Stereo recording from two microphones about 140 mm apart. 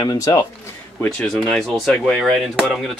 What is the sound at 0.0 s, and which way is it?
Speech, 25° left (ahead or behind).